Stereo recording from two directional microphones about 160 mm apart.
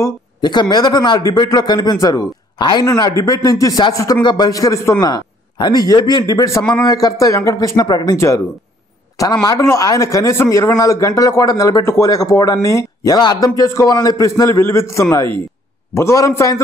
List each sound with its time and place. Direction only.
0.0 s a man's voice: 25° left (ahead or behind)